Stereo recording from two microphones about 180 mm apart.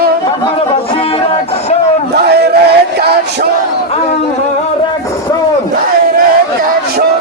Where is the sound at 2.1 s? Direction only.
65° right (ahead or behind).